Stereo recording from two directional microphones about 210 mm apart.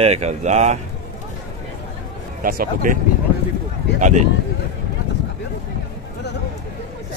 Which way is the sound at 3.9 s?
35° right (ahead or behind).